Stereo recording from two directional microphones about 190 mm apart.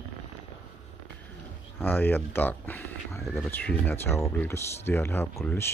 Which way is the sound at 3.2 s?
Centre (ahead or behind).